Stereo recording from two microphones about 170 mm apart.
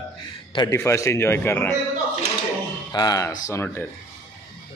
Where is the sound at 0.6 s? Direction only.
20° left (ahead or behind).